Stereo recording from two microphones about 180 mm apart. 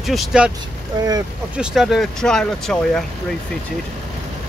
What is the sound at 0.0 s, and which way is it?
Speech, centre (ahead or behind).